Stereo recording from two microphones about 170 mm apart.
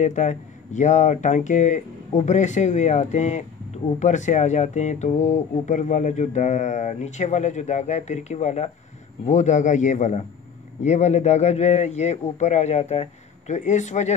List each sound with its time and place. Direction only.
0.0 s speech: 45° left (ahead or behind)